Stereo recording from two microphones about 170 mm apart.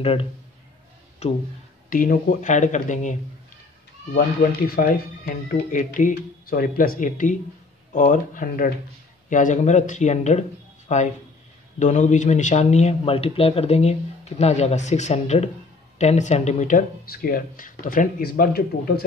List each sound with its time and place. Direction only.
0.0 s speech: 35° left (ahead or behind)
1.9 s speech: 55° left (ahead or behind)
4.2 s speech: 60° left (ahead or behind)